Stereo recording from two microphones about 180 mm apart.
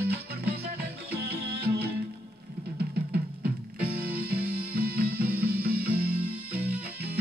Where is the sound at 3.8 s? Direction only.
60° right (ahead or behind).